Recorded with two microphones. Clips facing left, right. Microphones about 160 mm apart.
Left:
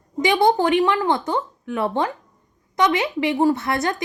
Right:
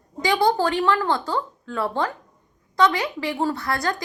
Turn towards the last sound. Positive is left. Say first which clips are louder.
# left 5 dB
turn(degrees=20)  # may be behind; listen again after turning